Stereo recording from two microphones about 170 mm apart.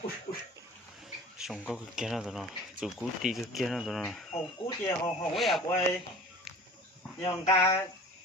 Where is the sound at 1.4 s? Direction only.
Centre (ahead or behind).